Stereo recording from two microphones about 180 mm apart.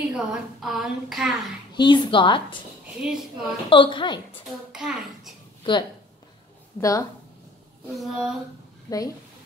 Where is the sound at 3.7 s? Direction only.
25° left (ahead or behind).